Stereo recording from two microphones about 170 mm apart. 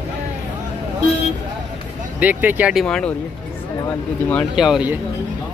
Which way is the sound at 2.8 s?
5° left (ahead or behind).